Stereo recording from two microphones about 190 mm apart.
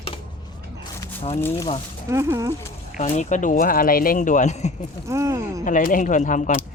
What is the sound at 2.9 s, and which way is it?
Speech, 40° left (ahead or behind).